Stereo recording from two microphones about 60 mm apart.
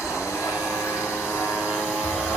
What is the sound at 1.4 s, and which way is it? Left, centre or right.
Vehicle, left.